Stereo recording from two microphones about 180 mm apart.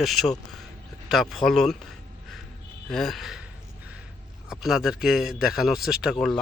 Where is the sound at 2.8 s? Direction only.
Centre (ahead or behind).